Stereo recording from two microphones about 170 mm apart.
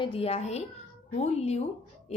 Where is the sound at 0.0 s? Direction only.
35° left (ahead or behind).